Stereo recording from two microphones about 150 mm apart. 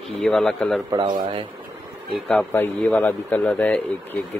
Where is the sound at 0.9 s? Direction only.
30° right (ahead or behind).